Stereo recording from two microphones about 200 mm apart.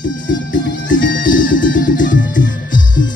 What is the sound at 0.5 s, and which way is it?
Music, 45° left (ahead or behind).